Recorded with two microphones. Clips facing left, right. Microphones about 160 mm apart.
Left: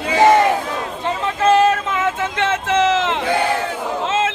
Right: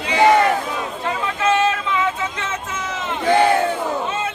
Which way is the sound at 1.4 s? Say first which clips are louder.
Left 5 dB; 40° left (ahead or behind).